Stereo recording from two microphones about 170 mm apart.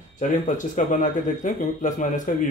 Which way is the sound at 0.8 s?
50° left (ahead or behind).